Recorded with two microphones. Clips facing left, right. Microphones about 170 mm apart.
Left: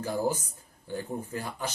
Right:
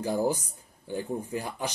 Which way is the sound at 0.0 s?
15° right (ahead or behind).